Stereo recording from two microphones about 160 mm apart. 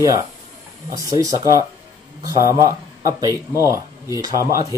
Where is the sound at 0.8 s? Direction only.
20° right (ahead or behind).